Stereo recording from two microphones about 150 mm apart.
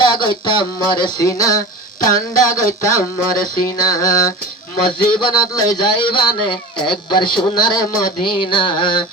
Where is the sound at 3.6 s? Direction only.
20° left (ahead or behind).